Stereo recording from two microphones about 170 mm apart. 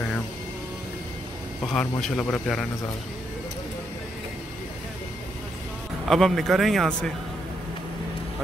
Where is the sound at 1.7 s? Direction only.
5° left (ahead or behind).